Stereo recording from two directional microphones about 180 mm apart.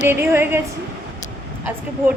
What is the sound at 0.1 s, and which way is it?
Speech, 10° right (ahead or behind).